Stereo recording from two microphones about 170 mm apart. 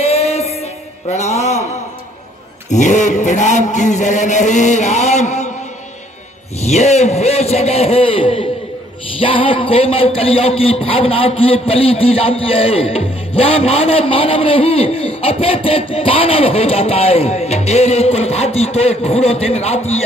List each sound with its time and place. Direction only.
0.0 s music: 35° left (ahead or behind)
2.7 s a sound: 45° left (ahead or behind)
6.6 s a man's voice: 40° left (ahead or behind)